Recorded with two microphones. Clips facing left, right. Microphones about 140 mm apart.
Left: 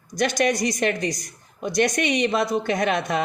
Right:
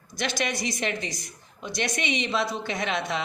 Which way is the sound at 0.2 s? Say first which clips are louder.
Left 8 dB; 45° left (ahead or behind).